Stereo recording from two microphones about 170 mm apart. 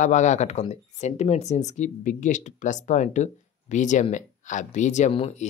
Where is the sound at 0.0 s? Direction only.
45° left (ahead or behind).